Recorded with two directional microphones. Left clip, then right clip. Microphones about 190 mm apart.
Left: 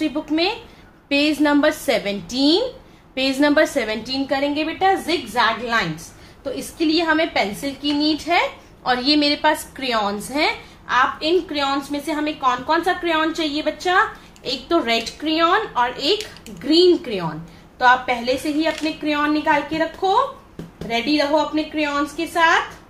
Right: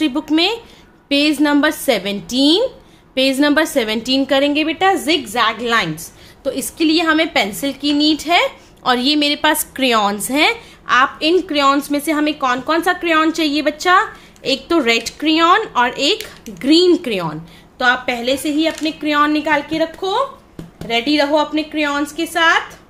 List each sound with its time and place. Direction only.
0.0 s a woman's voice: 50° right (ahead or behind)
1.0 s a woman's voice: 40° right (ahead or behind); by 5.9 s 65° right (ahead or behind)
6.4 s a woman's voice: 50° right (ahead or behind)